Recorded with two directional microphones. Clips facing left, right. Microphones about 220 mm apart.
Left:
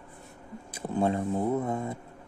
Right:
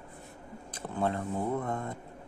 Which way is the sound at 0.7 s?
15° left (ahead or behind).